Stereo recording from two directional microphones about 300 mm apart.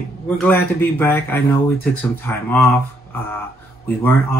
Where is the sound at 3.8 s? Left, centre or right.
Centre.